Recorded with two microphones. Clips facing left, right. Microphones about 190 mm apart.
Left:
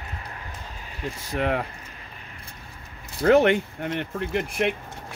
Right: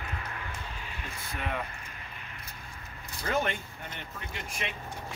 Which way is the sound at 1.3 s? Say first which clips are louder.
Left 10 dB; 70° left (ahead or behind).